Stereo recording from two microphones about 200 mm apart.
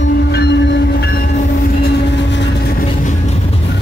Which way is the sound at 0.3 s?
55° left (ahead or behind).